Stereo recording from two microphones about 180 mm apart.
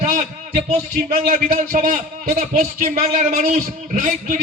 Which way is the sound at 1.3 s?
50° right (ahead or behind).